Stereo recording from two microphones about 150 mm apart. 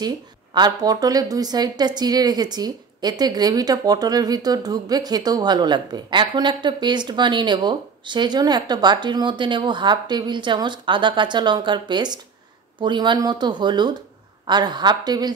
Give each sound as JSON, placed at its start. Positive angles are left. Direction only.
{"t": 0.6, "sound": "a woman's voice", "side_deg": -25}